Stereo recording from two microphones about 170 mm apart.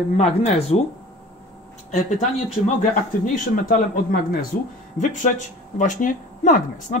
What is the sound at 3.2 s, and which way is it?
Speech, 55° left (ahead or behind).